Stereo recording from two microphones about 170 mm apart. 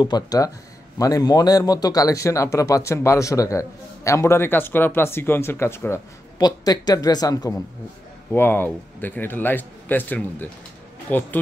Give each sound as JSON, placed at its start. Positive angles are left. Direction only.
{"t": 0.0, "sound": "a man's voice", "side_deg": 25}